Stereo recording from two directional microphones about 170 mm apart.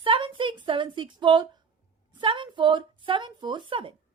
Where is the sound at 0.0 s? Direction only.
30° right (ahead or behind).